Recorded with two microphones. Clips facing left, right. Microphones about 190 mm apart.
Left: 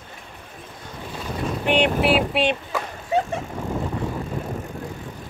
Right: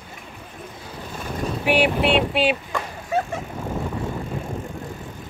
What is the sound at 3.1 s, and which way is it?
Vehicle, 20° left (ahead or behind).